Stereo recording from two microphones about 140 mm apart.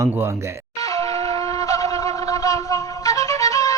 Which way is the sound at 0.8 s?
25° left (ahead or behind).